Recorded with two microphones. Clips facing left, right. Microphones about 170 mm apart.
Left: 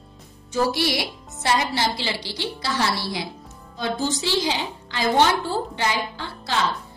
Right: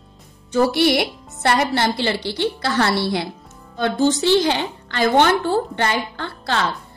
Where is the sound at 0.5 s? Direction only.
60° right (ahead or behind).